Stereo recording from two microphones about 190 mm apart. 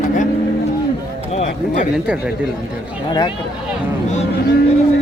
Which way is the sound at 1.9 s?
5° right (ahead or behind).